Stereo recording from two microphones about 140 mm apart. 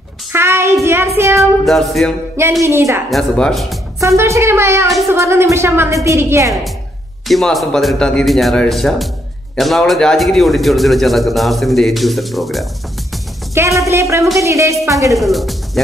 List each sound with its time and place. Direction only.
0.3 s child singing: 15° right (ahead or behind)
1.6 s a man's voice: centre (ahead or behind)
2.6 s speech: 20° right (ahead or behind)
3.1 s a man's voice: 5° left (ahead or behind)
4.2 s speech: 20° right (ahead or behind)
5.1 s child singing: 20° right (ahead or behind)
6.0 s speech: 20° right (ahead or behind)
7.2 s a man's voice: centre (ahead or behind)
13.6 s speech: 20° right (ahead or behind)
15.1 s speech: centre (ahead or behind)